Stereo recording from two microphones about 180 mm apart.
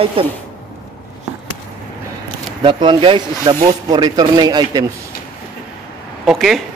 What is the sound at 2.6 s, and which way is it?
Speech, 25° right (ahead or behind).